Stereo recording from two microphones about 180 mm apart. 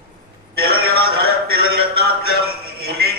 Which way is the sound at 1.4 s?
60° right (ahead or behind).